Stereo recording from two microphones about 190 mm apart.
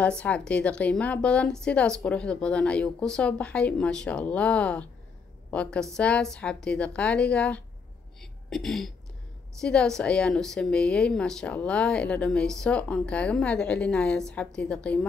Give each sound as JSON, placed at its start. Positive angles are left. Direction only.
{"t": 0.0, "sound": "a woman's voice", "side_deg": 5}